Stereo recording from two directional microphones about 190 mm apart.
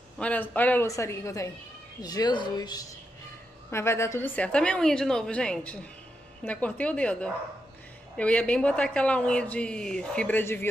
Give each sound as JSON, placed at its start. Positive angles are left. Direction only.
{"t": 0.2, "sound": "a woman's voice", "side_deg": 5}